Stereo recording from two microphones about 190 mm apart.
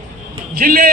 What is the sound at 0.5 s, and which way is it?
Speech, 50° right (ahead or behind).